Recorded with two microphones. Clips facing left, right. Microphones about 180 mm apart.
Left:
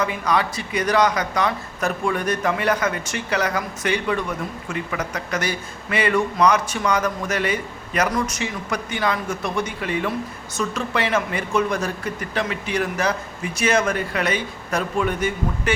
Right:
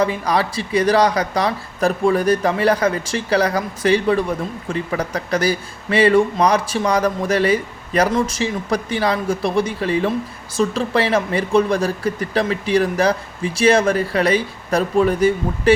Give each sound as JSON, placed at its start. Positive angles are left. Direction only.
{"t": 0.0, "sound": "speech", "side_deg": -35}